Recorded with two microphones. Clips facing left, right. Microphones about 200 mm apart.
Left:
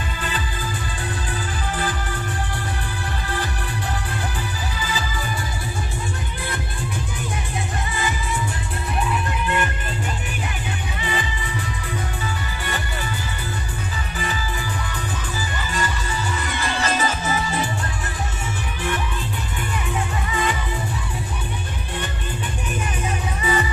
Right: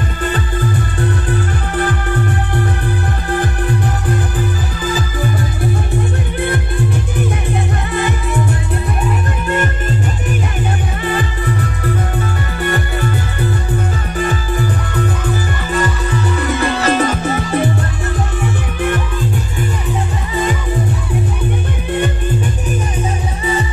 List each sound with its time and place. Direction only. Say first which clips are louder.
0.2 s music: right 11 dB; 55° right (ahead or behind)
4.8 s music: right 11 dB; 50° right (ahead or behind)
9.5 s music: right 8 dB; 45° right (ahead or behind)
11.1 s music: right 9 dB; 55° right (ahead or behind)